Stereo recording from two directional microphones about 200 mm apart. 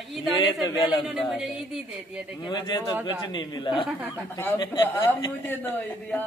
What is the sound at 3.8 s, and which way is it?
Speech, 10° right (ahead or behind).